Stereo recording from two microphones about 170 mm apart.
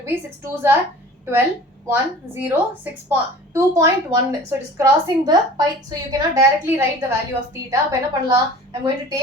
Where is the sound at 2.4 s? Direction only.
10° right (ahead or behind).